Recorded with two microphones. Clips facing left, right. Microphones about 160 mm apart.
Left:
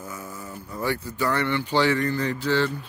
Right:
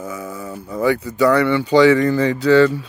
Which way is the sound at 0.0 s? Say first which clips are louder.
Right 8 dB; 75° right (ahead or behind).